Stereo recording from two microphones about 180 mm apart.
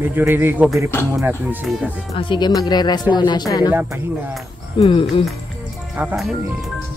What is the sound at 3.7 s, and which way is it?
Music, 10° right (ahead or behind).